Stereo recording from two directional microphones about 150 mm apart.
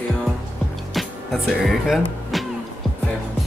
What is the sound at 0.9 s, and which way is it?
Speech, centre (ahead or behind).